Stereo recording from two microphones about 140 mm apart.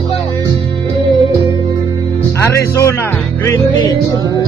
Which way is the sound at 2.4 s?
20° left (ahead or behind).